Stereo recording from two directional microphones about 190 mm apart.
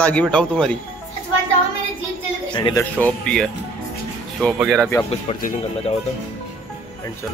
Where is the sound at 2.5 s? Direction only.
25° left (ahead or behind).